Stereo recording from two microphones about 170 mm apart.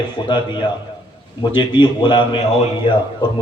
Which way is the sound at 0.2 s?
25° left (ahead or behind).